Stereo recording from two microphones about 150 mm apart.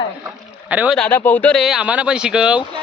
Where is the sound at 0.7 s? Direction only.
10° right (ahead or behind).